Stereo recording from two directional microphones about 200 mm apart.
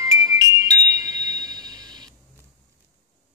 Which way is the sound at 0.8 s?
20° right (ahead or behind).